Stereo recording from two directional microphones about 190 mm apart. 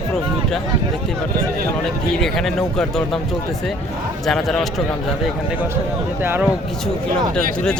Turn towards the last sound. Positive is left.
turn(degrees=-10)  # may be behind; listen again after turning